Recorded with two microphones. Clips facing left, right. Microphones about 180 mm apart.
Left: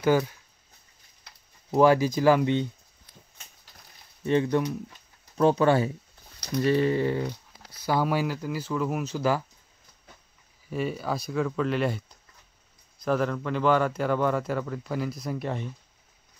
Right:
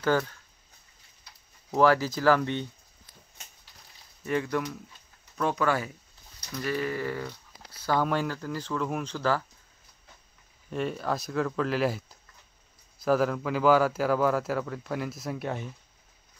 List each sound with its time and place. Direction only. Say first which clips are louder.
0.0 s speech: left 3 dB; 10° left (ahead or behind)
1.7 s speech: left 3 dB; 15° left (ahead or behind)
4.2 s a sound: left 5 dB; 25° left (ahead or behind)
7.8 s speech: left 1 dB; 10° left (ahead or behind)
10.7 s speech: left 1 dB; 5° left (ahead or behind)